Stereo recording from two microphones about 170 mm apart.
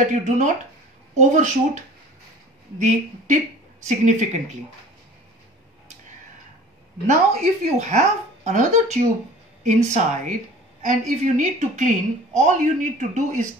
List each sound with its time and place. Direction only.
0.0 s a woman's voice: 45° right (ahead or behind)
7.1 s a woman's voice: 45° right (ahead or behind)